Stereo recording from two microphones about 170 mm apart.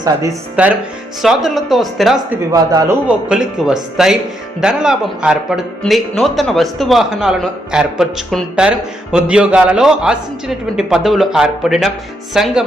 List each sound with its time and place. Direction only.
0.0 s speech: 20° right (ahead or behind)
0.6 s a man's voice: 5° right (ahead or behind)
2.3 s speech: 15° right (ahead or behind)
3.1 s a man's voice: 5° right (ahead or behind)